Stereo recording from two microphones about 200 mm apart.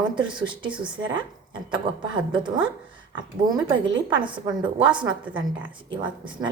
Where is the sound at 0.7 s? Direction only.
5° right (ahead or behind).